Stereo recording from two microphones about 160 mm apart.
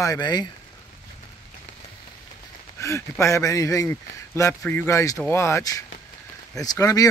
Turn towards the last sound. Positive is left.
turn(degrees=20)  # may be behind; listen again after turning